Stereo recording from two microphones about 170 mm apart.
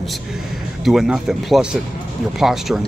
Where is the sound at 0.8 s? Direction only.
Centre (ahead or behind).